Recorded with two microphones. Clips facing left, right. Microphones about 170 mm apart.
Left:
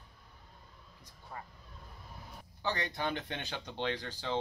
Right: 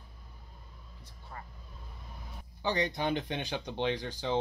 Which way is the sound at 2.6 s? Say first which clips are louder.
Right 4 dB; 15° right (ahead or behind).